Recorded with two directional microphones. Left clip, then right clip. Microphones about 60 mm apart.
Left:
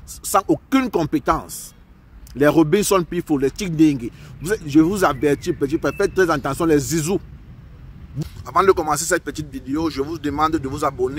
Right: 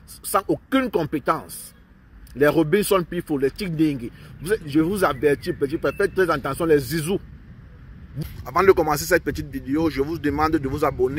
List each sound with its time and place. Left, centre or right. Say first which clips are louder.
0.2 s speech: left 4 dB; left
8.5 s a man's voice: left 1 dB; left